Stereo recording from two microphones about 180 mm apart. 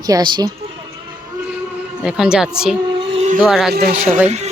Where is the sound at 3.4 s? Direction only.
Centre (ahead or behind).